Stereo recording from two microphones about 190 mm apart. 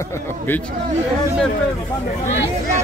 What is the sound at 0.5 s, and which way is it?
Speech, 10° left (ahead or behind).